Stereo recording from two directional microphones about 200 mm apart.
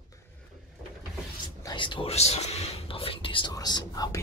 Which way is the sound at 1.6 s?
20° left (ahead or behind).